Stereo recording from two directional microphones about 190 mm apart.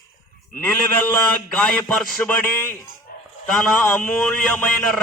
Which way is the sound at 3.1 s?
55° left (ahead or behind).